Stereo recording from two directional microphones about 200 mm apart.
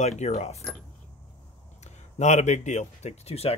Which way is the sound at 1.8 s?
35° left (ahead or behind).